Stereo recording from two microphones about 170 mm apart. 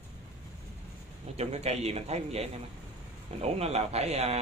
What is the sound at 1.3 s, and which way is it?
A man's voice, 40° right (ahead or behind).